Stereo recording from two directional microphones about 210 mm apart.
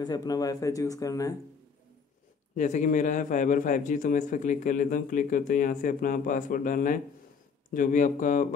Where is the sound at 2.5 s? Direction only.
35° left (ahead or behind).